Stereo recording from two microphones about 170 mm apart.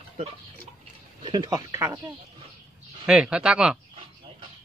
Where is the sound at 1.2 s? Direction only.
25° right (ahead or behind).